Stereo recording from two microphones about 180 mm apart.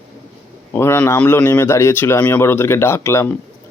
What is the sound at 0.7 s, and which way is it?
A man's voice, 10° left (ahead or behind).